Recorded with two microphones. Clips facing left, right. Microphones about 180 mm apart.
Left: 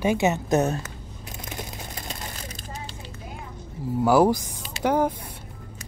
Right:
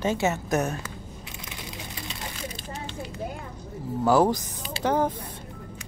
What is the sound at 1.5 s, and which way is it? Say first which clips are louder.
Vehicle: left 4 dB; 45° left (ahead or behind).